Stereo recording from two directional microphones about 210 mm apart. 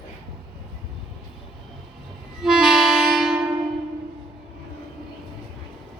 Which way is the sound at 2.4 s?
Centre (ahead or behind).